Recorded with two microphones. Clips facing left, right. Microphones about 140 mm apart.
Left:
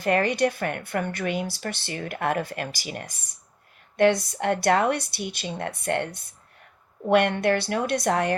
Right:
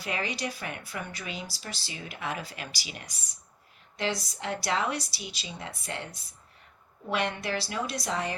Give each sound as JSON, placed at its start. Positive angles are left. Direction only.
{"t": 0.0, "sound": "speech", "side_deg": 55}